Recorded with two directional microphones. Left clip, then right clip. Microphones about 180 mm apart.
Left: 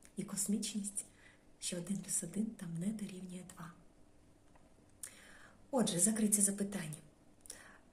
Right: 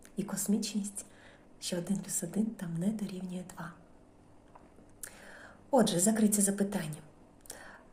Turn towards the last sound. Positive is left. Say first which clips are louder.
# right 6 dB
turn(degrees=15)  # may be behind; listen again after turning